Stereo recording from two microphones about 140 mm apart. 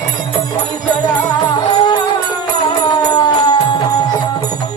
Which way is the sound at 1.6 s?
30° left (ahead or behind).